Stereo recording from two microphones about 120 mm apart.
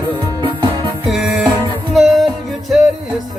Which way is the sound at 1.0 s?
Centre (ahead or behind).